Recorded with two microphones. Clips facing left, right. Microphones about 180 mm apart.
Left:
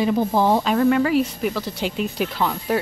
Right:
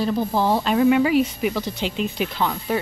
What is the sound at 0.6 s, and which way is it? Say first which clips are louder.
A woman's voice: right 1 dB; 5° right (ahead or behind).